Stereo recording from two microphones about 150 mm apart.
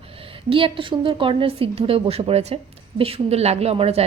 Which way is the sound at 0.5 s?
35° right (ahead or behind).